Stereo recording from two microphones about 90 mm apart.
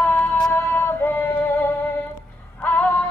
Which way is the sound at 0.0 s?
15° left (ahead or behind).